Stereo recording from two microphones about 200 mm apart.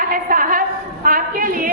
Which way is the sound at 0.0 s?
45° right (ahead or behind).